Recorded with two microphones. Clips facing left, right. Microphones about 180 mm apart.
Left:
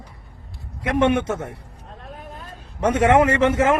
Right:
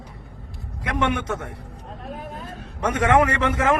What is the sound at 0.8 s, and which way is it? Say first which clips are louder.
Speech: left 5 dB; 25° left (ahead or behind).